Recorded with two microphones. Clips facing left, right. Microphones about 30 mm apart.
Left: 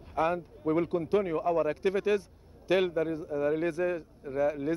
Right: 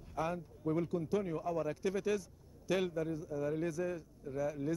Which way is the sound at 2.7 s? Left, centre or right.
Left.